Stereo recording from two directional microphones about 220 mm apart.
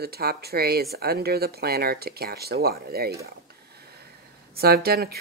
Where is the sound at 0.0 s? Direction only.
45° right (ahead or behind).